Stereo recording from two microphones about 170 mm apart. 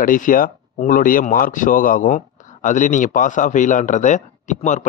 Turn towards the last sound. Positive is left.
turn(degrees=45)  # may be behind; listen again after turning